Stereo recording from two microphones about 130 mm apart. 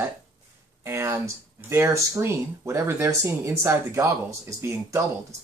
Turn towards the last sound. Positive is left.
turn(degrees=-25)  # may be behind; listen again after turning